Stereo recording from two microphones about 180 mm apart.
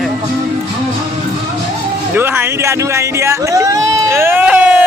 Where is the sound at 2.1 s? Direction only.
15° right (ahead or behind).